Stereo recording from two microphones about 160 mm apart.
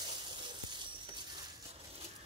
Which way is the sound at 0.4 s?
30° right (ahead or behind).